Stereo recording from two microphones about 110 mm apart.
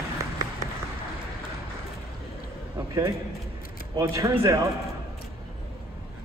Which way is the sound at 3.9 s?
30° right (ahead or behind).